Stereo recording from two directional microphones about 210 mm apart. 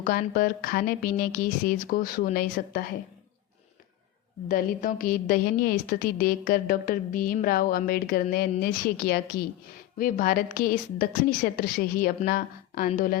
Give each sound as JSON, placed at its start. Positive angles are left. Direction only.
{"t": 0.0, "sound": "a woman's voice", "side_deg": 40}
{"t": 4.4, "sound": "a woman's voice", "side_deg": 40}